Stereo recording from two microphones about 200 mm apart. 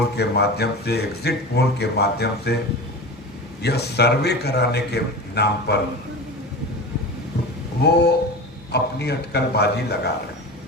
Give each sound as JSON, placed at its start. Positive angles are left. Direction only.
{"t": 0.2, "sound": "speech", "side_deg": 55}
{"t": 3.6, "sound": "speech", "side_deg": 55}
{"t": 7.8, "sound": "speech", "side_deg": 55}